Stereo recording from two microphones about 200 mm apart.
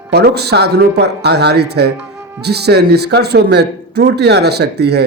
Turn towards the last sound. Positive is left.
turn(degrees=-55)  # may be behind; listen again after turning